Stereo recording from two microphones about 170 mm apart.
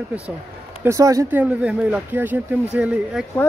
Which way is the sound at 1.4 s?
5° right (ahead or behind).